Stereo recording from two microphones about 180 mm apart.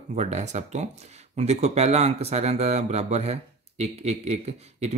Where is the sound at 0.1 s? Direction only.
40° right (ahead or behind).